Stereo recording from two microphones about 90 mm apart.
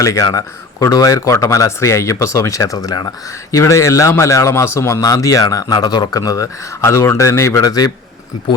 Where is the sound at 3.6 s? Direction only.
35° left (ahead or behind).